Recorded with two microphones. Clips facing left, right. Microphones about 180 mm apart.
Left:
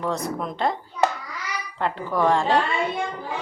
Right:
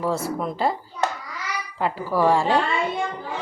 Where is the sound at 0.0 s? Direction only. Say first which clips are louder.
Right 2 dB; 5° right (ahead or behind).